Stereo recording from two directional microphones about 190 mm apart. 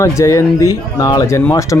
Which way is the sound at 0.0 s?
15° left (ahead or behind).